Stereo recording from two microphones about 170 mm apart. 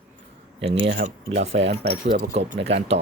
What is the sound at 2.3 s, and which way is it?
Speech, 40° right (ahead or behind).